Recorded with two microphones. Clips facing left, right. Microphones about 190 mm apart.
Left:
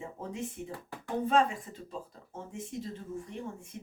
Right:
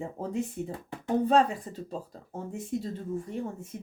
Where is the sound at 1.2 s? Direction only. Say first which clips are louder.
Right 2 dB; 35° right (ahead or behind).